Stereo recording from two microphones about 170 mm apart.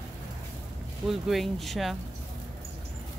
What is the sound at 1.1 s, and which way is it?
Speech, centre (ahead or behind).